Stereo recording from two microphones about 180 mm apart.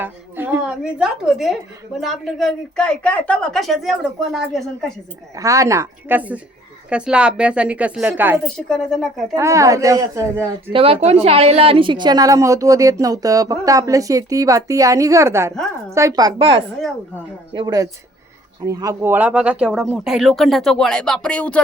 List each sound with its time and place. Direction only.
0.0 s a woman's voice: 10° right (ahead or behind)
5.3 s a woman's voice: 20° right (ahead or behind)
8.5 s speech: 5° left (ahead or behind)
9.3 s a woman's voice: 15° right (ahead or behind)
10.7 s a woman's voice: 30° right (ahead or behind); by 21.6 s 5° left (ahead or behind)